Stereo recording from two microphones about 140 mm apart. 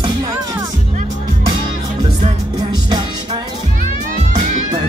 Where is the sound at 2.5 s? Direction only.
30° right (ahead or behind).